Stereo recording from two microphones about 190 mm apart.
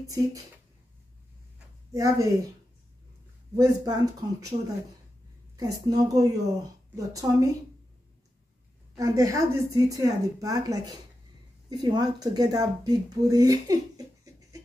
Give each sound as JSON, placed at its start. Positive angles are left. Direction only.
{"t": 0.0, "sound": "a woman's voice", "side_deg": -15}
{"t": 1.9, "sound": "a woman's voice", "side_deg": -20}
{"t": 3.5, "sound": "speech", "side_deg": -20}
{"t": 5.6, "sound": "a woman's voice", "side_deg": -20}
{"t": 8.9, "sound": "a woman's voice", "side_deg": -15}